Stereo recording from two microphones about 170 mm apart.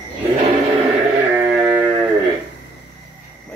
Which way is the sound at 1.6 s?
10° right (ahead or behind).